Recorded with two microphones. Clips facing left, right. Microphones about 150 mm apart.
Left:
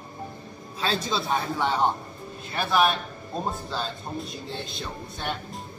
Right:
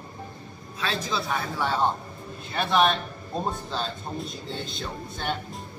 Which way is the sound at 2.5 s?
Centre (ahead or behind).